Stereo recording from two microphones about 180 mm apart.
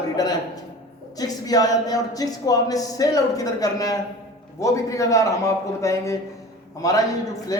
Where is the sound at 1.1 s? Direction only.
20° left (ahead or behind).